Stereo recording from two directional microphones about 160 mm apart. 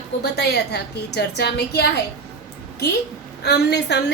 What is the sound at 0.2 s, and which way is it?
A woman's voice, 90° left.